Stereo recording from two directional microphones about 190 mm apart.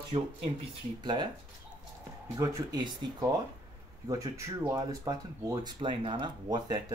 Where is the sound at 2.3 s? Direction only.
20° right (ahead or behind).